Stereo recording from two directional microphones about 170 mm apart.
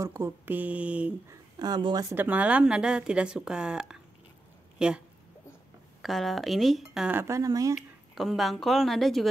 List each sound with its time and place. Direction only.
0.0 s speech: 15° right (ahead or behind)
1.6 s speech: 25° right (ahead or behind); by 5.0 s 5° right (ahead or behind)
6.0 s speech: centre (ahead or behind)
7.2 s speech: 15° right (ahead or behind)
7.7 s speech: centre (ahead or behind)